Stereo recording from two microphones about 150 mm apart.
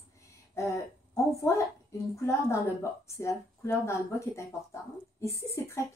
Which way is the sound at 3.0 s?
20° left (ahead or behind).